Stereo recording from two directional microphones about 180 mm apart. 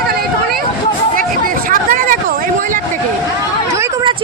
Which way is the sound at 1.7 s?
50° right (ahead or behind).